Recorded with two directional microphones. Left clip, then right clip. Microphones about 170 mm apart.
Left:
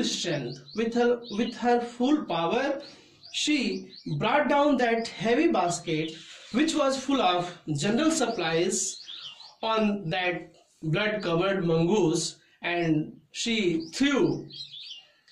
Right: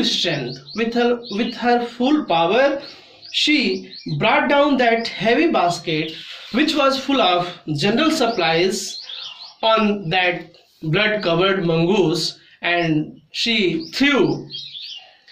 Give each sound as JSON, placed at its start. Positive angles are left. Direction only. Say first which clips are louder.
{"t": 0.0, "sound": "speech", "louder": "right 9 dB", "side_deg": 15}